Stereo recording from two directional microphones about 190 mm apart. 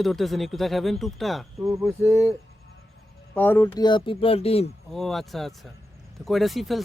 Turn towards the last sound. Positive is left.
turn(degrees=0)  # may be behind; listen again after turning